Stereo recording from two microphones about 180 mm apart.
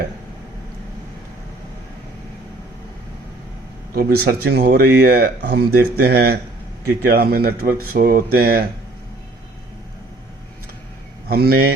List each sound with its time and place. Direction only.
3.9 s speech: 60° right (ahead or behind)
11.3 s speech: 60° right (ahead or behind)